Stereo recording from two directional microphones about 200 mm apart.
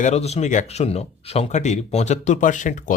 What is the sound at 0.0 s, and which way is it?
Speech, 35° left (ahead or behind).